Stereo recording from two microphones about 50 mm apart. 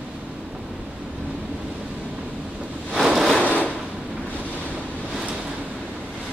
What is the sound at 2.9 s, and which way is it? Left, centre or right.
Waves, centre.